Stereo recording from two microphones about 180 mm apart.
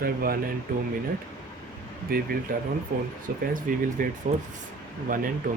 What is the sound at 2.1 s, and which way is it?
Speech, 55° right (ahead or behind).